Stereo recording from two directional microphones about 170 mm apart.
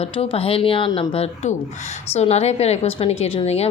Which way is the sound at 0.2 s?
35° left (ahead or behind).